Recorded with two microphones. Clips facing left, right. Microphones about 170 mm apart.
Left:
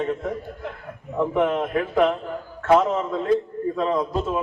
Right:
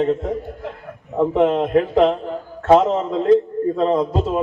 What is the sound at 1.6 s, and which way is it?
A man's voice, 25° right (ahead or behind).